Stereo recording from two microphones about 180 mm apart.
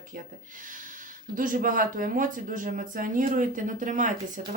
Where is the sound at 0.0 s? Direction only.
50° right (ahead or behind).